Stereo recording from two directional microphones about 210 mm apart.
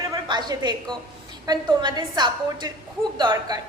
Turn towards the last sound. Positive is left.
turn(degrees=-20)  # may be behind; listen again after turning